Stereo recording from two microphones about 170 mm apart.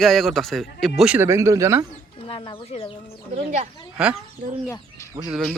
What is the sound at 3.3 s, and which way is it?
Speech, 45° right (ahead or behind).